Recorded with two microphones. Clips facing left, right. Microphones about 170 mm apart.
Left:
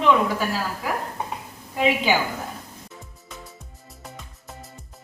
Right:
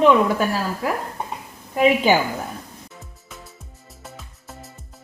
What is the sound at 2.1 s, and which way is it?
Speech, 45° right (ahead or behind).